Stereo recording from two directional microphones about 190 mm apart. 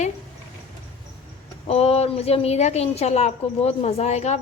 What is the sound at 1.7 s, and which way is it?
A woman's voice, 35° left (ahead or behind).